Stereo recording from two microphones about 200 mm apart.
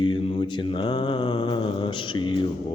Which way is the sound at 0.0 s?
25° left (ahead or behind).